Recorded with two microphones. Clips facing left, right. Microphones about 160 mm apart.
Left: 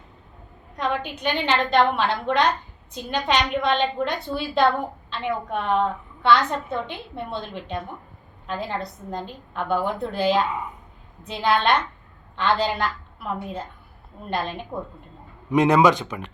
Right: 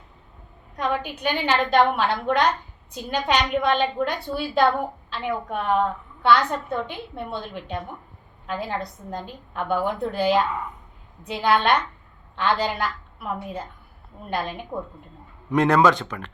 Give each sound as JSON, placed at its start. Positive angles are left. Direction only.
{"t": 0.8, "sound": "a woman's voice", "side_deg": -10}
{"t": 10.4, "sound": "speech", "side_deg": 10}
{"t": 11.3, "sound": "a woman's voice", "side_deg": -10}
{"t": 15.5, "sound": "speech", "side_deg": 15}